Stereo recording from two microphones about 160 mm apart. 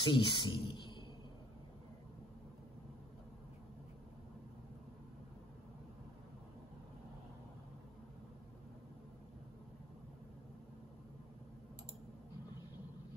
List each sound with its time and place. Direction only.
0.0 s speech: 25° left (ahead or behind)